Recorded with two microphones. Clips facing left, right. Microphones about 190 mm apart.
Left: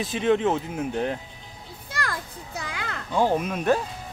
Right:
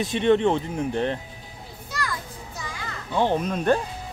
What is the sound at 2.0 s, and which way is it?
Children playing, 60° left (ahead or behind).